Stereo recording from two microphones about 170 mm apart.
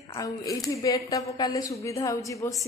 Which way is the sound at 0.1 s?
20° left (ahead or behind).